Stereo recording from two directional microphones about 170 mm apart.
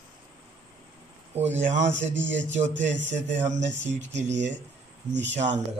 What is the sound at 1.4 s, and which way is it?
Speech, 45° right (ahead or behind).